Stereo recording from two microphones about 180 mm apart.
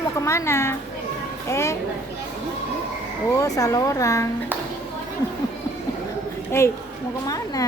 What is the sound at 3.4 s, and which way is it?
Speech, 20° left (ahead or behind).